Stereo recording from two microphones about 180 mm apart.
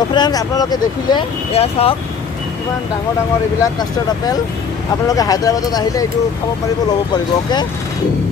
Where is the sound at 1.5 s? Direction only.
35° left (ahead or behind).